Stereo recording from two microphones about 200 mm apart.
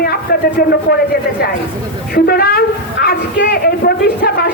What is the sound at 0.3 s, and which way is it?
Speech, 50° left (ahead or behind).